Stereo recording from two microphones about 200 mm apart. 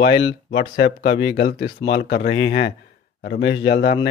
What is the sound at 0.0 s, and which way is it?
A man's voice, 60° left (ahead or behind).